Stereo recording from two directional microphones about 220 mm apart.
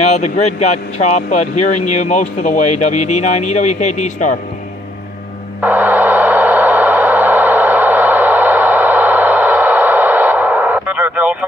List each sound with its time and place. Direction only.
0.0 s speech: 30° left (ahead or behind)
5.6 s gong: 10° right (ahead or behind)